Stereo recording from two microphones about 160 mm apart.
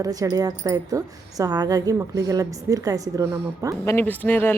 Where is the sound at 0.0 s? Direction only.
20° right (ahead or behind).